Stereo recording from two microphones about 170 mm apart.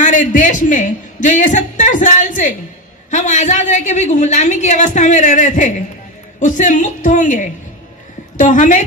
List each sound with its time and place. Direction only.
0.0 s a woman's voice: 50° left (ahead or behind)